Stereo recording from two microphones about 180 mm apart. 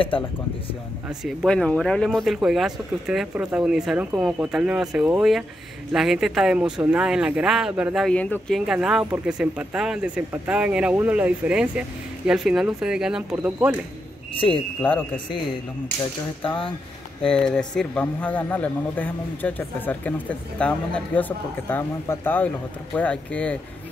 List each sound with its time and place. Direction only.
0.1 s speech: 30° left (ahead or behind)
1.0 s speech: centre (ahead or behind)
14.3 s speech: 30° left (ahead or behind)
14.8 s speech: 10° left (ahead or behind)
16.4 s speech: 25° left (ahead or behind)
17.2 s speech: 5° left (ahead or behind)